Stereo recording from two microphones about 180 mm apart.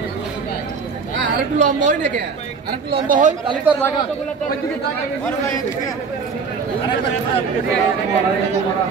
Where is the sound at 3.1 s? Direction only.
45° right (ahead or behind).